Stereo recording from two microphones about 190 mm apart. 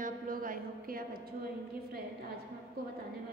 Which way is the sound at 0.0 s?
45° right (ahead or behind).